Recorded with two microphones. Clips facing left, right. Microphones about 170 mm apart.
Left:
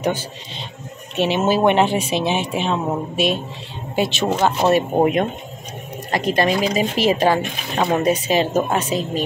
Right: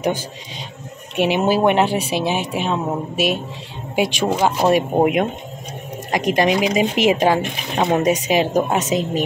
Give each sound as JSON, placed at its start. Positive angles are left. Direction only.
{"t": 1.1, "sound": "speech", "side_deg": -10}